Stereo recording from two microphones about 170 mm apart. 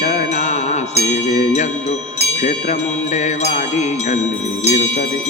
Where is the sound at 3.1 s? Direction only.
45° left (ahead or behind).